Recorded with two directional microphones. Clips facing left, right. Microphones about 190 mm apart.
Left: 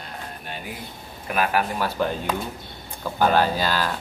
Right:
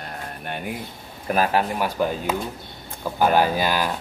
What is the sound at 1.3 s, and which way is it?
Speech, 35° right (ahead or behind).